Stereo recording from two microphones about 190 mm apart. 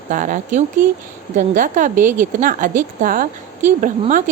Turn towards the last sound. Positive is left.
turn(degrees=-40)  # may be behind; listen again after turning